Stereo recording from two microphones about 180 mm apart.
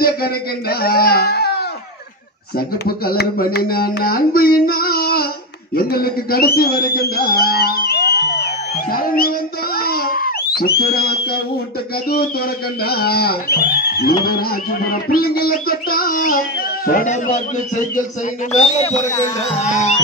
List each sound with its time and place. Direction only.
0.0 s speech: 60° left (ahead or behind)
2.5 s carnatic music: 55° left (ahead or behind)
5.8 s a man's voice: 55° left (ahead or behind)
8.9 s a sound: 55° left (ahead or behind)
10.6 s carnatic music: 60° left (ahead or behind)
15.1 s music: 55° left (ahead or behind)
18.5 s a man's voice: 40° left (ahead or behind)